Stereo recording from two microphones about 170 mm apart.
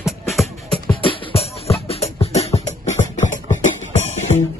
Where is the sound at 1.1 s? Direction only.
35° left (ahead or behind).